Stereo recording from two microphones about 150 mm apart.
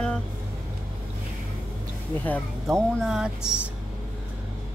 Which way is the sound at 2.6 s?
Centre (ahead or behind).